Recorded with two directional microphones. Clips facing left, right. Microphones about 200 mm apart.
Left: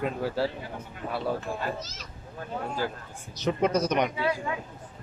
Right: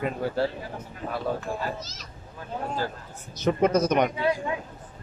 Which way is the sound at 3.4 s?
50° right (ahead or behind).